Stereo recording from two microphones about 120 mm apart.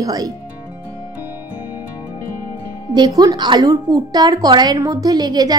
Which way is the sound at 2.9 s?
35° right (ahead or behind).